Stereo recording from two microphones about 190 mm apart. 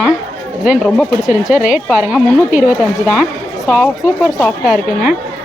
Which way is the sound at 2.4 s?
45° left (ahead or behind).